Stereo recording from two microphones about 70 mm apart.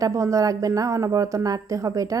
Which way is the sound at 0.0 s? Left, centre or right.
Right.